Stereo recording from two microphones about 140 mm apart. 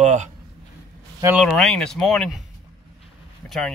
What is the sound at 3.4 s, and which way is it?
Speech, centre (ahead or behind).